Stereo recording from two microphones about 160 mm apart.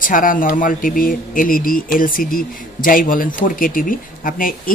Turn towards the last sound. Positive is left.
turn(degrees=60)  # may be behind; listen again after turning